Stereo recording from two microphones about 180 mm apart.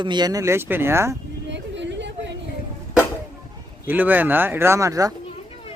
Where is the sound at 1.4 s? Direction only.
80° right.